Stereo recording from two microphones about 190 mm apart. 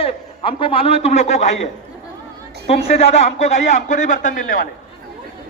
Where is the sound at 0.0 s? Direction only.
30° left (ahead or behind); by 4.5 s 45° left (ahead or behind).